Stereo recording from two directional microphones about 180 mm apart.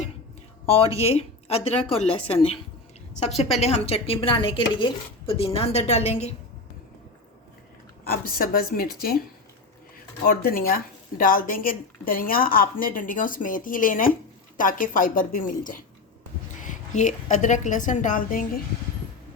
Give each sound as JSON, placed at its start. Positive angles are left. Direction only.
{"t": 0.6, "sound": "a woman's voice", "side_deg": 30}
{"t": 8.0, "sound": "a woman's voice", "side_deg": 55}
{"t": 10.2, "sound": "speech", "side_deg": 55}